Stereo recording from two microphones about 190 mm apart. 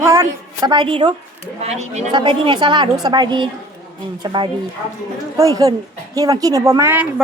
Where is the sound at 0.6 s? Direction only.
25° right (ahead or behind).